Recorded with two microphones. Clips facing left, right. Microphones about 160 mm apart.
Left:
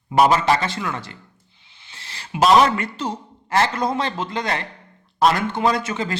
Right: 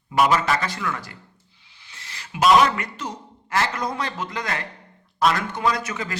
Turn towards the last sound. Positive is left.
turn(degrees=30)  # may be behind; listen again after turning